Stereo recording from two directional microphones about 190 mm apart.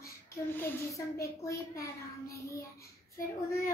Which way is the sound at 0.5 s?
15° left (ahead or behind).